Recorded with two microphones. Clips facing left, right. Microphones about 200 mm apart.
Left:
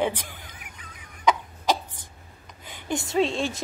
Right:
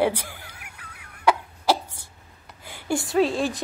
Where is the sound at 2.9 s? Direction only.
25° left (ahead or behind).